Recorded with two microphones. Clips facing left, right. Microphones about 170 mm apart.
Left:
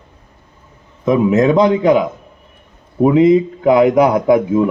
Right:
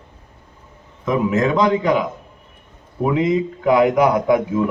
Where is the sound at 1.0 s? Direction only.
20° left (ahead or behind).